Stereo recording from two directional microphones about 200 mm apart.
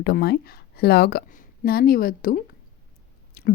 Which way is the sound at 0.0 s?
55° left (ahead or behind).